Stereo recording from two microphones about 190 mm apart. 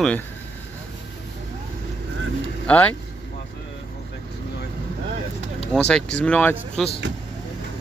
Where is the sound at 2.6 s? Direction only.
10° left (ahead or behind).